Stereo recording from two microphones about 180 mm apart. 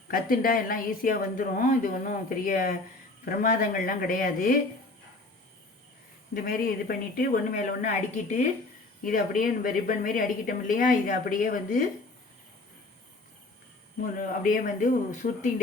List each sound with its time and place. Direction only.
0.1 s a woman's voice: 50° left (ahead or behind)
6.3 s a woman's voice: 55° left (ahead or behind)
14.2 s a woman's voice: 45° left (ahead or behind)